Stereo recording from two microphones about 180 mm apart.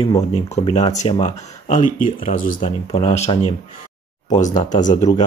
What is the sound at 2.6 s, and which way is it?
Speech, 35° left (ahead or behind).